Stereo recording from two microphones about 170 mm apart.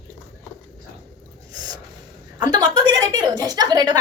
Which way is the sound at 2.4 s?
25° right (ahead or behind).